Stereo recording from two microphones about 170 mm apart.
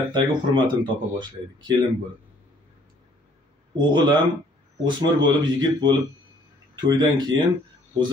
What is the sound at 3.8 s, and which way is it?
Speech, 25° right (ahead or behind).